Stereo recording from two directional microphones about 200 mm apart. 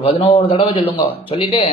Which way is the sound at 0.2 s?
30° left (ahead or behind).